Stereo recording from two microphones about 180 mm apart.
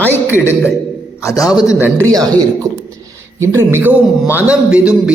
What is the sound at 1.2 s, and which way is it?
Speech, 20° left (ahead or behind).